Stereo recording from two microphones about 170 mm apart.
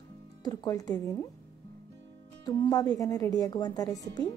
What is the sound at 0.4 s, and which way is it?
Speech, 20° left (ahead or behind).